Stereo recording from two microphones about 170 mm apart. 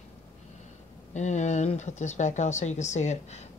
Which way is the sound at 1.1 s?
45° left (ahead or behind).